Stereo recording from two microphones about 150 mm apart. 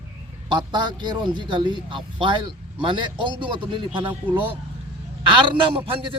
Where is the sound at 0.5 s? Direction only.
30° right (ahead or behind).